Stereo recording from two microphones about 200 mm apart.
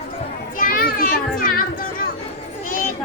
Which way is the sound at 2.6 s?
45° left (ahead or behind).